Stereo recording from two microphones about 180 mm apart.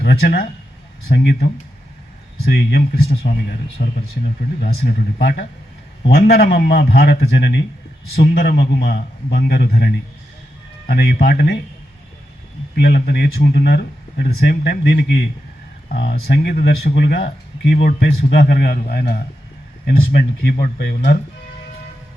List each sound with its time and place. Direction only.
0.0 s speech: 60° left (ahead or behind)
12.7 s speech: 60° left (ahead or behind)